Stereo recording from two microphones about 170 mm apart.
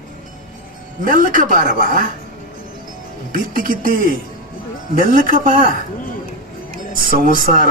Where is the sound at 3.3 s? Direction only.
55° right (ahead or behind).